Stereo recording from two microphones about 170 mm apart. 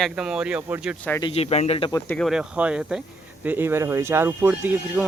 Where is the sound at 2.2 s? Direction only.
5° right (ahead or behind).